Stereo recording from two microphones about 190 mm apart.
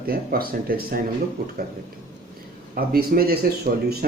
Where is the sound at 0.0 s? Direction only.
50° right (ahead or behind).